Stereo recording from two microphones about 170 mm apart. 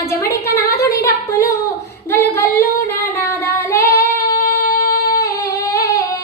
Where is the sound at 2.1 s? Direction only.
15° left (ahead or behind).